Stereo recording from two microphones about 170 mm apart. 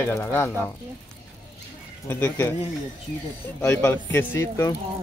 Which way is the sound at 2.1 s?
15° left (ahead or behind).